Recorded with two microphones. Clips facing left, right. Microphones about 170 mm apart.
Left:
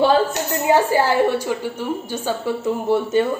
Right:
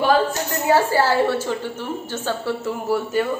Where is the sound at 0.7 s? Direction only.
20° left (ahead or behind).